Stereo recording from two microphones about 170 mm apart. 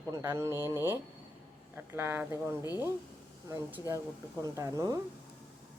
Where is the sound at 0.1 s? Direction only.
15° right (ahead or behind).